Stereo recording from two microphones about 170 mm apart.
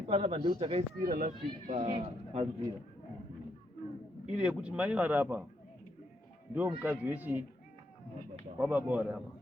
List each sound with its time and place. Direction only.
0.0 s speech: 35° right (ahead or behind)
1.0 s speech: 50° right (ahead or behind)
2.0 s speech: 40° right (ahead or behind)
4.4 s a man's voice: 5° right (ahead or behind)
6.5 s a man's voice: 10° right (ahead or behind)
8.5 s a man's voice: 10° right (ahead or behind)